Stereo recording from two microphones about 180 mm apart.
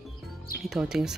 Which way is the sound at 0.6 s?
Centre (ahead or behind).